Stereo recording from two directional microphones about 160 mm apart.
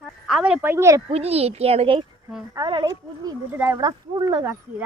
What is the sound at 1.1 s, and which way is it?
A woman's voice, 40° right (ahead or behind).